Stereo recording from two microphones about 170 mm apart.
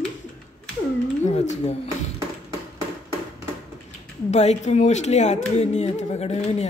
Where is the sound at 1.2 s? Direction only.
45° left (ahead or behind).